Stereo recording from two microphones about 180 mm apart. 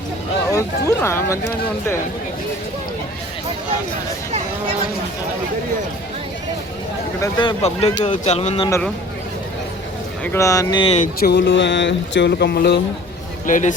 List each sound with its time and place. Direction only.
0.9 s speech: 15° left (ahead or behind)
7.2 s speech: 25° left (ahead or behind)
10.2 s speech: 15° left (ahead or behind)
10.9 s speech: 45° left (ahead or behind)
11.3 s a sound: 70° left (ahead or behind)
13.5 s speech: 45° left (ahead or behind)